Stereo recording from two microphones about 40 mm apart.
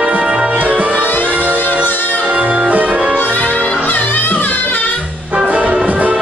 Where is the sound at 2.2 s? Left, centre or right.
Right.